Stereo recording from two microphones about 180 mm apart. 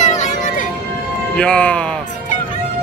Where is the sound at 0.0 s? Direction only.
40° left (ahead or behind).